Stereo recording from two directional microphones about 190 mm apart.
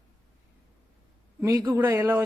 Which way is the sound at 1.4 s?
15° right (ahead or behind).